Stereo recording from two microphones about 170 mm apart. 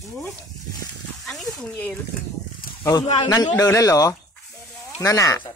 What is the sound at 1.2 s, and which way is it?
Speech, centre (ahead or behind).